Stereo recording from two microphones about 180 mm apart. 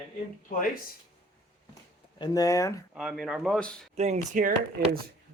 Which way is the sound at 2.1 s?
20° left (ahead or behind).